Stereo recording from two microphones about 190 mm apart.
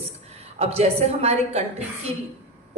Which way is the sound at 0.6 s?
35° right (ahead or behind).